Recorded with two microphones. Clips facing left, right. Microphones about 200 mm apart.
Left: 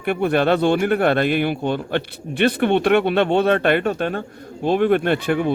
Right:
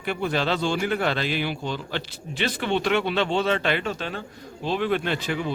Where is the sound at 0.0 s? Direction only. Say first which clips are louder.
Left 7 dB; 55° left (ahead or behind).